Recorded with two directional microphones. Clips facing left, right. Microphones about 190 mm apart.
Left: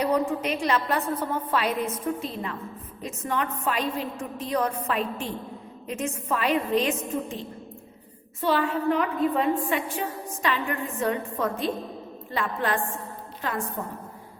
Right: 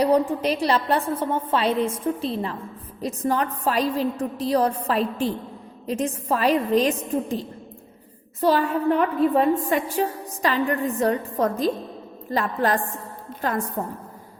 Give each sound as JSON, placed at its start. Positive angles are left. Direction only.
{"t": 0.0, "sound": "a woman's voice", "side_deg": -35}